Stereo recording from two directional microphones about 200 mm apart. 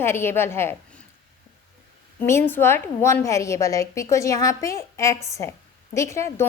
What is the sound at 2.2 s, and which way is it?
A woman's voice, 10° left (ahead or behind).